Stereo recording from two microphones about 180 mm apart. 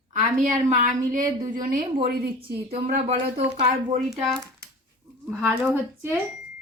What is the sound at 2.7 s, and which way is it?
Speech, 35° right (ahead or behind).